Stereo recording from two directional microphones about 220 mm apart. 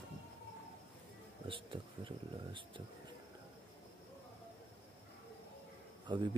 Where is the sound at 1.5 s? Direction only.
20° right (ahead or behind).